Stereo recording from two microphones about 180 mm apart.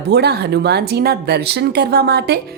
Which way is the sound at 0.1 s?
65° right (ahead or behind).